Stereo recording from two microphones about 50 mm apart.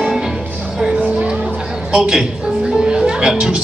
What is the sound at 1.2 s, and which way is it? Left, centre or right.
Music, centre.